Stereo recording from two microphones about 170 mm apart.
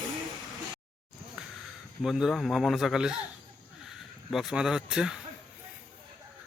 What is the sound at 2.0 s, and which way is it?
Speech, centre (ahead or behind).